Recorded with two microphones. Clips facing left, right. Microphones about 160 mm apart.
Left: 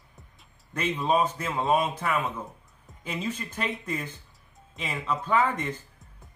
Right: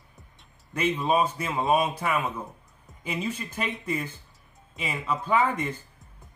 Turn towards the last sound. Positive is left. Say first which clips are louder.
# right 1 dB
turn(degrees=-10)  # may be behind; listen again after turning